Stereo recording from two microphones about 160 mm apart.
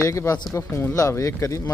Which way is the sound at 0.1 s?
20° left (ahead or behind).